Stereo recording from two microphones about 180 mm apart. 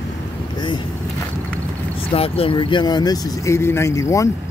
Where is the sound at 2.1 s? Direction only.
30° left (ahead or behind).